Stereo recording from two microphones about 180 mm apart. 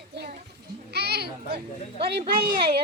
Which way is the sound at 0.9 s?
65° right (ahead or behind).